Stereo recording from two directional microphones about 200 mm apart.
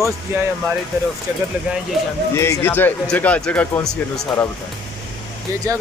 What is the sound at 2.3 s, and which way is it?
Speech, 15° left (ahead or behind).